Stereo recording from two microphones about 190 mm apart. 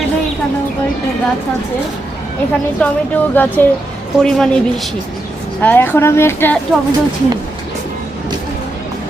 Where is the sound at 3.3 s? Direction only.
10° left (ahead or behind).